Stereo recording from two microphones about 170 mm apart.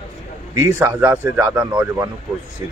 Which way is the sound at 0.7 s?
10° right (ahead or behind).